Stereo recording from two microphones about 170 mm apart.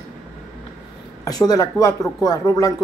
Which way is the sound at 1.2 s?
20° left (ahead or behind).